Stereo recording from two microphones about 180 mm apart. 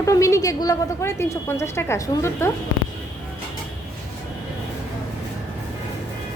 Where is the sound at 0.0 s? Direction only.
15° left (ahead or behind).